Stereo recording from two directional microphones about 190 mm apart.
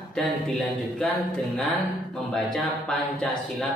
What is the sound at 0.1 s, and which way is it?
Speech, 5° left (ahead or behind).